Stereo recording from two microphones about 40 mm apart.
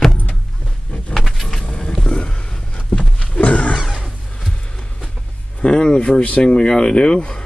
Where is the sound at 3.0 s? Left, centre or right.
Left.